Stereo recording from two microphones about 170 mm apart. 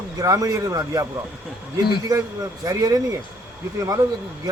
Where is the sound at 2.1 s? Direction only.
20° right (ahead or behind).